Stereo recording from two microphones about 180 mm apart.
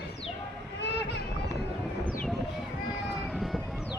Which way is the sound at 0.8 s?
70° left (ahead or behind).